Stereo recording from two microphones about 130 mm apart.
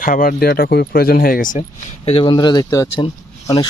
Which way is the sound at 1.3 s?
90° left.